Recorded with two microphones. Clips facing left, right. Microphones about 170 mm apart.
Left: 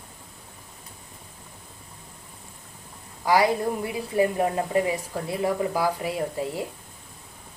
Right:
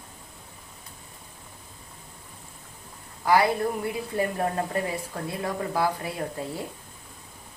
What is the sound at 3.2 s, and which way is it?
A woman's voice, 15° left (ahead or behind).